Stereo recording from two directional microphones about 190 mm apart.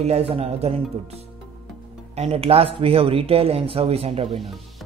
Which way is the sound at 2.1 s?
35° right (ahead or behind).